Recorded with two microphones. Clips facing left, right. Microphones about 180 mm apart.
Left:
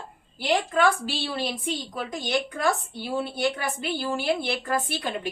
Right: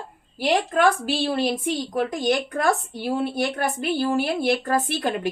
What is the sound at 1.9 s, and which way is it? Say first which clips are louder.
Speech: right 6 dB; 50° right (ahead or behind).